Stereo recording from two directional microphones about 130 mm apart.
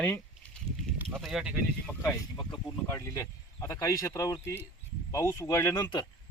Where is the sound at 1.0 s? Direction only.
Centre (ahead or behind).